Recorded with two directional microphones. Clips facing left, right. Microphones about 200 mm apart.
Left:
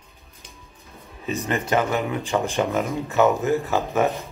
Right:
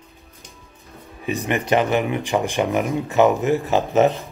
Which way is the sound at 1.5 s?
20° right (ahead or behind).